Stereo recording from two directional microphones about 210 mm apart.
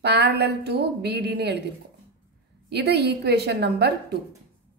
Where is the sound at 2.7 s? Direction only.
50° right (ahead or behind).